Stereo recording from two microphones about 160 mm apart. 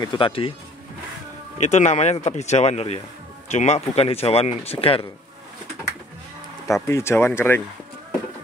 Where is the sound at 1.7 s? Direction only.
45° left (ahead or behind).